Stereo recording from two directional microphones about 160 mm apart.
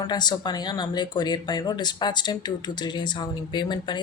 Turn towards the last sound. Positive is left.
turn(degrees=30)  # may be behind; listen again after turning